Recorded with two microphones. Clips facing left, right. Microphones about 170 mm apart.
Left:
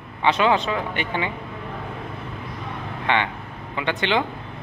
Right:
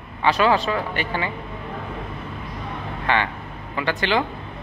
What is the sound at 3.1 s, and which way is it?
Speech, 20° left (ahead or behind).